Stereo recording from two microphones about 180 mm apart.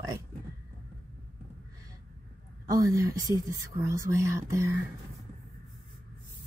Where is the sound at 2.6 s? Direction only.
20° right (ahead or behind).